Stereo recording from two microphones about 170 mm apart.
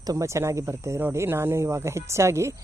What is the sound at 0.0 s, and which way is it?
Speech, 20° right (ahead or behind).